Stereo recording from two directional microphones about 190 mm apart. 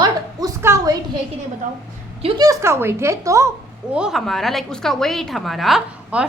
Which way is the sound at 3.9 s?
Centre (ahead or behind).